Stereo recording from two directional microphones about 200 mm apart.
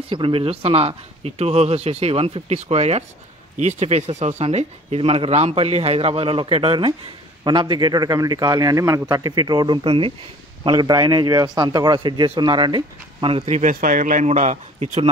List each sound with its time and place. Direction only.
0.1 s a man's voice: 25° right (ahead or behind)